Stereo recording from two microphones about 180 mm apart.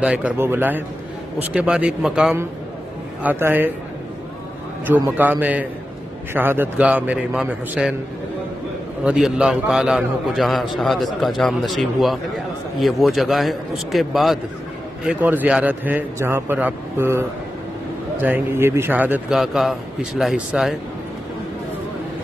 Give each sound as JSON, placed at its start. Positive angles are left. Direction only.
{"t": 0.0, "sound": "a man's voice", "side_deg": -10}
{"t": 4.8, "sound": "a man's voice", "side_deg": -10}
{"t": 9.0, "sound": "a man's voice", "side_deg": -5}